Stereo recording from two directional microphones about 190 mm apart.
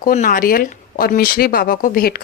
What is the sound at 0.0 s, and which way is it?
Speech, 45° left (ahead or behind).